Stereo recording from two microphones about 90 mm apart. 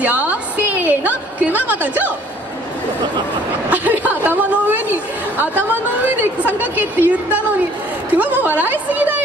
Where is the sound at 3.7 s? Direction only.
20° right (ahead or behind).